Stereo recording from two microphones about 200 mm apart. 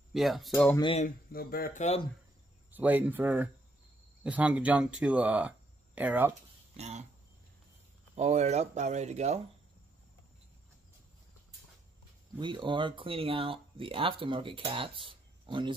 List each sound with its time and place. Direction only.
0.1 s speech: centre (ahead or behind)
0.7 s speech: 25° left (ahead or behind)
1.0 s speech: 50° left (ahead or behind)
2.7 s speech: 10° right (ahead or behind)
6.8 s speech: 35° right (ahead or behind)
8.2 s speech: 35° right (ahead or behind)
12.4 s speech: 25° right (ahead or behind)